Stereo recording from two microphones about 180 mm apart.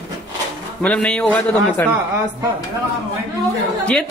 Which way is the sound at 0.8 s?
5° left (ahead or behind).